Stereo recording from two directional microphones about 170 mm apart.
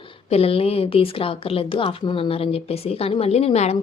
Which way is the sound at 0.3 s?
35° left (ahead or behind).